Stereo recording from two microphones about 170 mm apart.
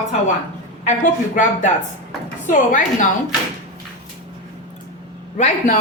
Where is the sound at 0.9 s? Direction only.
50° left (ahead or behind).